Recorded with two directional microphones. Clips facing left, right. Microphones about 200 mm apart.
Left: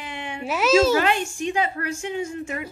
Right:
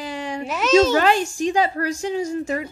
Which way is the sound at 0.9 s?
35° right (ahead or behind).